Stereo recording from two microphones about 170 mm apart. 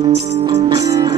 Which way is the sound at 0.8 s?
25° right (ahead or behind).